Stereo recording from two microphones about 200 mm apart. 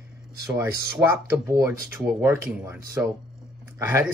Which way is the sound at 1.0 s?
10° right (ahead or behind).